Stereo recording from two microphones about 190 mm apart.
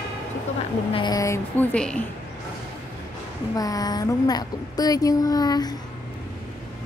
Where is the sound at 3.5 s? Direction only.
20° left (ahead or behind).